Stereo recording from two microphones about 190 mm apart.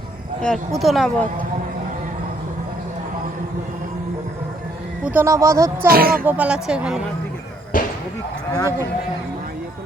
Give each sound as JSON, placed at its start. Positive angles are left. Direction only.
{"t": 0.4, "sound": "speech", "side_deg": 0}
{"t": 5.0, "sound": "speech", "side_deg": -15}
{"t": 5.9, "sound": "speech", "side_deg": -50}
{"t": 6.2, "sound": "speech", "side_deg": -10}
{"t": 7.7, "sound": "a sound", "side_deg": 45}
{"t": 8.5, "sound": "speech", "side_deg": 20}